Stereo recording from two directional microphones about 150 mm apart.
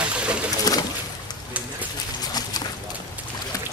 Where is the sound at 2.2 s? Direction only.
25° left (ahead or behind).